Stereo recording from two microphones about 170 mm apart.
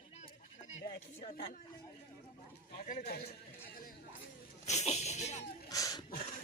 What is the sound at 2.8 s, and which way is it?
Speech, 60° left (ahead or behind).